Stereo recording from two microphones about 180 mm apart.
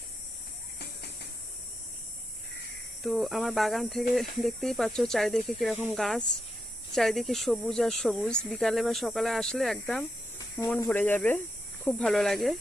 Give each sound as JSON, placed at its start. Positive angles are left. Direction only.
{"t": 0.8, "sound": "hiss", "side_deg": 65}
{"t": 3.0, "sound": "speech", "side_deg": 0}